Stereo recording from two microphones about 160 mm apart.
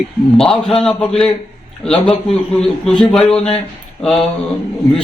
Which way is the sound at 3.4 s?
40° left (ahead or behind).